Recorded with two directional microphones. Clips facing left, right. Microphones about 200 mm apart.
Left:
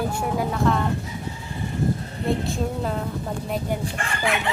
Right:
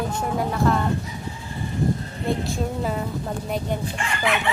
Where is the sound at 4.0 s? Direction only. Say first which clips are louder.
Right 1 dB; 55° left (ahead or behind).